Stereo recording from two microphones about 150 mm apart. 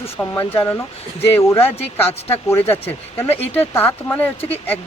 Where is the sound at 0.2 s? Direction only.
15° left (ahead or behind).